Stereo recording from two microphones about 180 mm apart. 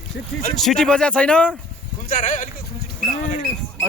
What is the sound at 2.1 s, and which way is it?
Speech, 45° left (ahead or behind).